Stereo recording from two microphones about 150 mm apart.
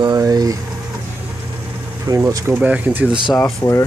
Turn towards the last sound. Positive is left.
turn(degrees=20)  # may be behind; listen again after turning